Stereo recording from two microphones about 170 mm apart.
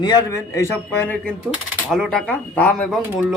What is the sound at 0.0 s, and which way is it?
A man's voice, 25° left (ahead or behind).